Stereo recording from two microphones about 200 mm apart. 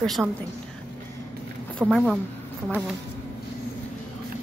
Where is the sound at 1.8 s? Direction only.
Centre (ahead or behind).